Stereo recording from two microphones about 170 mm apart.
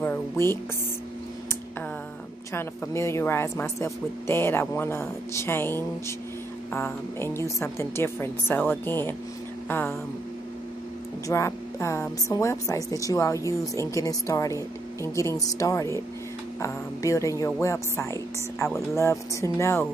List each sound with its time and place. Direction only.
0.0 s music: 15° left (ahead or behind)
2.5 s a woman's voice: 15° left (ahead or behind)
11.2 s a woman's voice: 15° left (ahead or behind)